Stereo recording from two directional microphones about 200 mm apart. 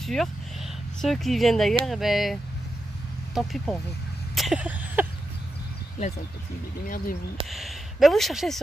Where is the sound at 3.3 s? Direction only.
5° left (ahead or behind).